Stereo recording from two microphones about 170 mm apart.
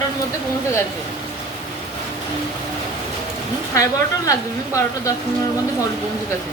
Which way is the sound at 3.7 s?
20° left (ahead or behind).